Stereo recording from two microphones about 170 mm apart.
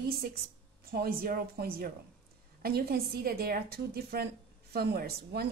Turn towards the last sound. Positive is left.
turn(degrees=-65)  # may be behind; listen again after turning